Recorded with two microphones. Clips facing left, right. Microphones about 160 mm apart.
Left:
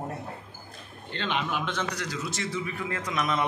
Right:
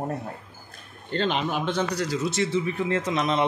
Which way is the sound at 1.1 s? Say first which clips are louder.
Right 5 dB; 35° right (ahead or behind).